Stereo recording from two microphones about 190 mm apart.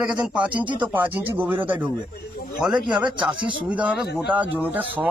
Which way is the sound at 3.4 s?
25° right (ahead or behind).